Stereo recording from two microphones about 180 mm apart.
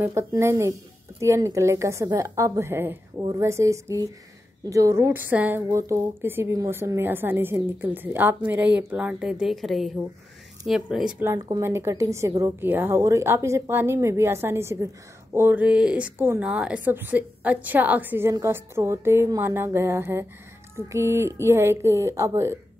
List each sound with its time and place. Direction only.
0.0 s a woman's voice: 15° right (ahead or behind)
11.3 s a woman's voice: 25° right (ahead or behind)